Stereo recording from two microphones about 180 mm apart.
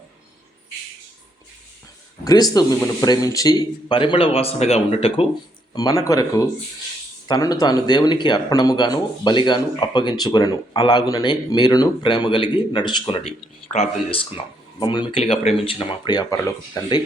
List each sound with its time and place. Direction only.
2.2 s speech: 20° left (ahead or behind)
5.7 s speech: 20° left (ahead or behind)